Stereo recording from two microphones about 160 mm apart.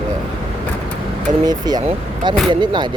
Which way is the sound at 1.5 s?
25° right (ahead or behind).